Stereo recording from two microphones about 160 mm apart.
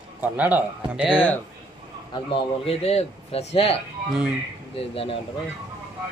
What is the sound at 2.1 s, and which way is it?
A man's voice, 35° left (ahead or behind).